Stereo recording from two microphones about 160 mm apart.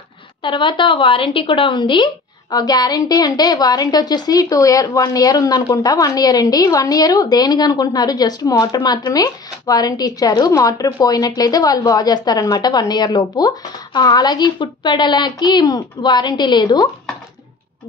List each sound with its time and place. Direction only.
0.4 s a woman's voice: 30° left (ahead or behind)